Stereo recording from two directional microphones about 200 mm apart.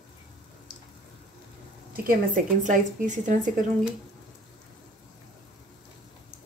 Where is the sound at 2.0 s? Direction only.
40° right (ahead or behind).